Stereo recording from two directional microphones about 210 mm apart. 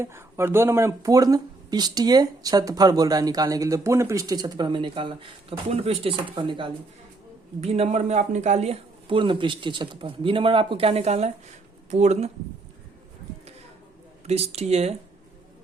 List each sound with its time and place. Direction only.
0.0 s speech: 10° right (ahead or behind); by 12.3 s 30° right (ahead or behind)
14.3 s speech: 30° right (ahead or behind)